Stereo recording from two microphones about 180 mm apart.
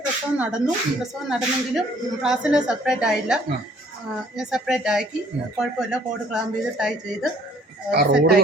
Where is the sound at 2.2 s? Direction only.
5° right (ahead or behind).